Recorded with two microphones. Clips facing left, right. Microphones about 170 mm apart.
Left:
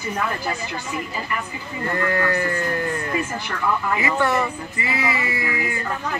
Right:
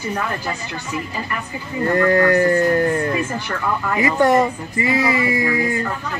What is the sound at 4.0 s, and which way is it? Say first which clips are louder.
Speech: right 11 dB; 40° right (ahead or behind).